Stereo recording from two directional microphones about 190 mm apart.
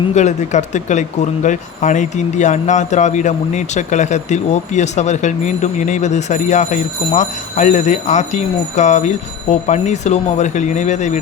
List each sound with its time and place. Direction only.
0.1 s speech: 40° left (ahead or behind)